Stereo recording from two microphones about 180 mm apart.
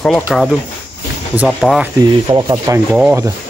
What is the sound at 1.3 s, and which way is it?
Speech, centre (ahead or behind).